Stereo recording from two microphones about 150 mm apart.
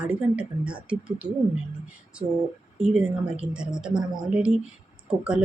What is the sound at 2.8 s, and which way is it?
Speech, 10° right (ahead or behind).